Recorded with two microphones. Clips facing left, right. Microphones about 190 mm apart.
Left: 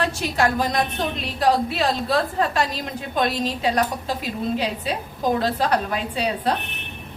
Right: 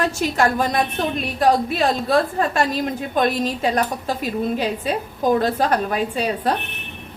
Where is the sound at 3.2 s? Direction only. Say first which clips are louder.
Right 2 dB; 50° right (ahead or behind).